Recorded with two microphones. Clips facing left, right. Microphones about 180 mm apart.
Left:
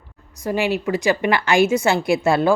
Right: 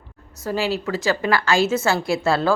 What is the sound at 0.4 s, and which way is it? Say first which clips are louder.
A woman's voice: left 2 dB; 15° left (ahead or behind).